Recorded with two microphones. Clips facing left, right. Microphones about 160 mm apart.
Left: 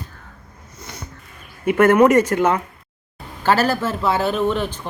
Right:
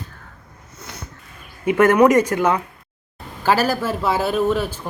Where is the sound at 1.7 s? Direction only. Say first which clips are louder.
Even; 15° right (ahead or behind).